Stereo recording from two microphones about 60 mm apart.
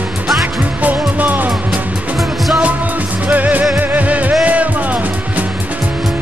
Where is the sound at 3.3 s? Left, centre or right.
Right.